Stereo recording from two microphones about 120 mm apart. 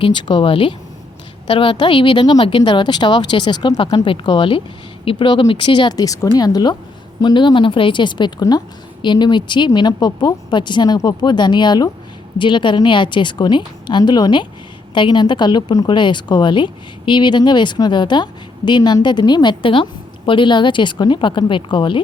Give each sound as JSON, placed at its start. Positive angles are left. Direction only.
{"t": 0.0, "sound": "a woman's voice", "side_deg": 40}